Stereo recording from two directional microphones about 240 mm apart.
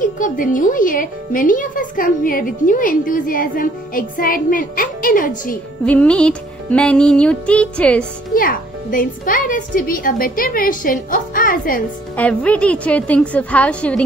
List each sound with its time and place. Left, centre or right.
0.0 s speech: left
5.9 s speech: centre
8.4 s speech: left
12.2 s speech: centre